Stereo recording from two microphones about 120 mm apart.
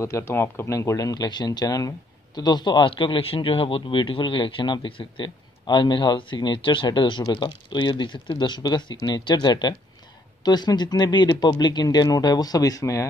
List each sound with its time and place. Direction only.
0.0 s speech: 20° left (ahead or behind)